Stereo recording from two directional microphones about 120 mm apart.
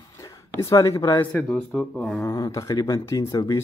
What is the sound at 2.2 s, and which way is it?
Speech, 25° left (ahead or behind).